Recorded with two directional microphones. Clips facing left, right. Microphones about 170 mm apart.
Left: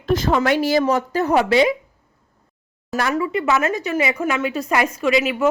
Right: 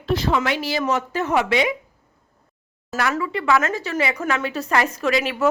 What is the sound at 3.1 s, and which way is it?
Speech, 20° left (ahead or behind).